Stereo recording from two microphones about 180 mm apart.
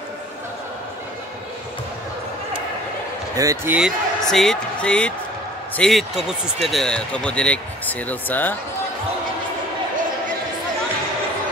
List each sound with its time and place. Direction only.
3.3 s speech: 15° right (ahead or behind)
3.7 s speech: centre (ahead or behind)